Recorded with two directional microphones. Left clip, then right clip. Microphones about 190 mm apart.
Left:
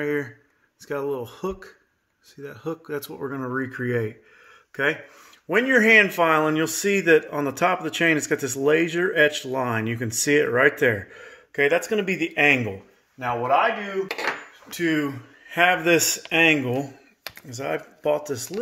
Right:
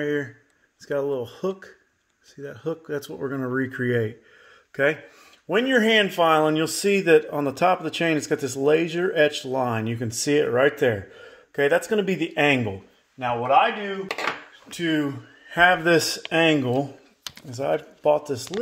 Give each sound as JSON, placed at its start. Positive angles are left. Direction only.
{"t": 0.0, "sound": "speech", "side_deg": -10}
{"t": 5.5, "sound": "speech", "side_deg": -10}
{"t": 11.9, "sound": "speech", "side_deg": -30}
{"t": 14.7, "sound": "speech", "side_deg": -25}